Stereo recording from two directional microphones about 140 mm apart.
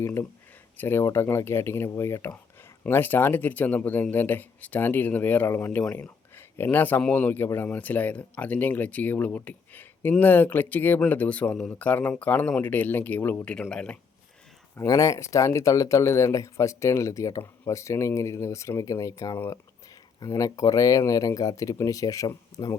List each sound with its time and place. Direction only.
0.0 s speech: 20° left (ahead or behind)
14.8 s speech: 25° left (ahead or behind)